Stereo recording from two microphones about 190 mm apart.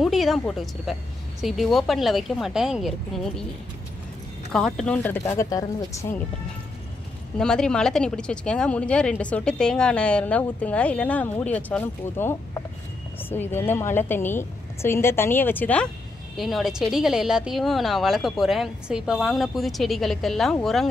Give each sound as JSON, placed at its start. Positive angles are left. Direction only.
{"t": 0.0, "sound": "speech", "side_deg": 0}
{"t": 4.5, "sound": "a woman's voice", "side_deg": 5}
{"t": 7.3, "sound": "a woman's voice", "side_deg": 5}